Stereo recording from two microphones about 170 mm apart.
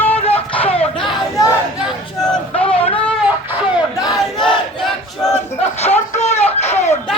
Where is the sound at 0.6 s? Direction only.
35° left (ahead or behind).